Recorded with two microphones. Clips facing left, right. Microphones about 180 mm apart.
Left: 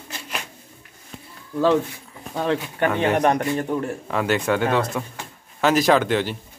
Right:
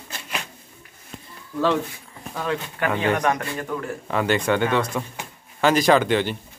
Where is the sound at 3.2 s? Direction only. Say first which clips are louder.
Left 4 dB; 25° left (ahead or behind).